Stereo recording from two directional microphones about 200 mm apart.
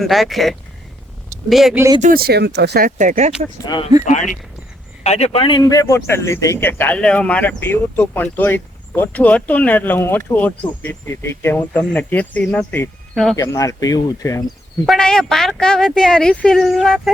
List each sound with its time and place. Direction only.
0.0 s speech: centre (ahead or behind)
2.0 s speech: 45° right (ahead or behind)
5.0 s speech: 30° left (ahead or behind); by 14.4 s 15° left (ahead or behind)
14.8 s speech: 5° left (ahead or behind)